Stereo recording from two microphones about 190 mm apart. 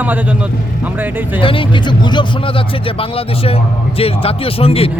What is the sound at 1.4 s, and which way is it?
Speech, 25° left (ahead or behind).